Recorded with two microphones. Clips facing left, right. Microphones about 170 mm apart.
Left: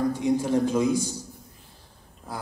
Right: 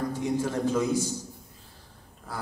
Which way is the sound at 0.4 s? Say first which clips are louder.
Left 3 dB; 15° left (ahead or behind).